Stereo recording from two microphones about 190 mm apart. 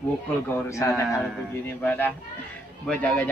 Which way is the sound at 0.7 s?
15° left (ahead or behind).